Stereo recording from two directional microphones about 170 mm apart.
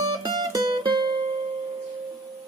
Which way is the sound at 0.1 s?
25° right (ahead or behind).